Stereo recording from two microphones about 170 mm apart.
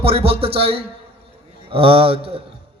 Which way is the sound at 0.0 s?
35° right (ahead or behind).